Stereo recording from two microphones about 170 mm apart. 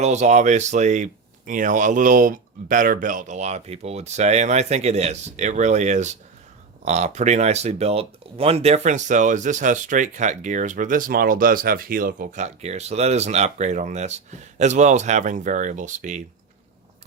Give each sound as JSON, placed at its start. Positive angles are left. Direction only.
{"t": 0.0, "sound": "speech", "side_deg": -45}